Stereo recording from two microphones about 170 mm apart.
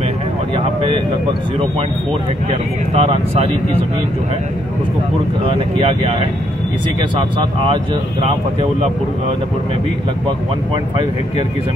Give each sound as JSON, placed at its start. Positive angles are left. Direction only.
{"t": 2.9, "sound": "speech", "side_deg": -40}
{"t": 5.8, "sound": "speech", "side_deg": -35}
{"t": 7.6, "sound": "speech", "side_deg": -35}